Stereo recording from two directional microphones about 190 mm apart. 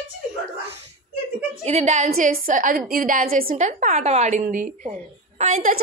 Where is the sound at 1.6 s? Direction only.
35° right (ahead or behind).